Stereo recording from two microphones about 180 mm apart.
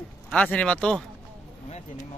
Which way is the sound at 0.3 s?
5° left (ahead or behind).